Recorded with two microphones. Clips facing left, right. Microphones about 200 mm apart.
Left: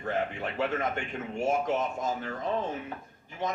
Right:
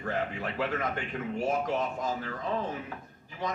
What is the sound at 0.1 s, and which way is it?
Speech, 25° left (ahead or behind).